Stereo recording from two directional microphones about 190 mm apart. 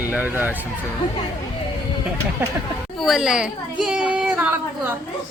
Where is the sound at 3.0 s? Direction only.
Centre (ahead or behind).